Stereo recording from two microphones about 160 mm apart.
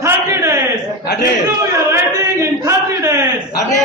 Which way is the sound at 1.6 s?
20° right (ahead or behind).